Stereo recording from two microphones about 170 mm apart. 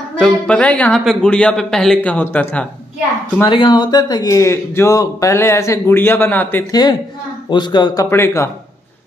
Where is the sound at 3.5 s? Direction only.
25° left (ahead or behind); by 6.6 s 10° left (ahead or behind).